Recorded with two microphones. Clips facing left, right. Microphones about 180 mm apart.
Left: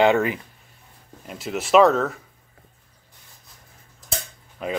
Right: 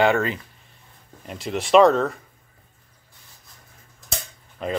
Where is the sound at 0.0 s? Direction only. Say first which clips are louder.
Left 2 dB; 15° left (ahead or behind).